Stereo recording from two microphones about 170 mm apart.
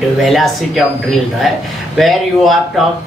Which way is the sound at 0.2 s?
Centre (ahead or behind).